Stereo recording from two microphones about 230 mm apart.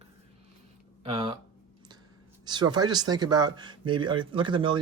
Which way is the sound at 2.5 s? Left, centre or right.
Centre.